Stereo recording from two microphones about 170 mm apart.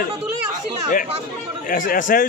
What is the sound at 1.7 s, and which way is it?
Speech, 55° left (ahead or behind).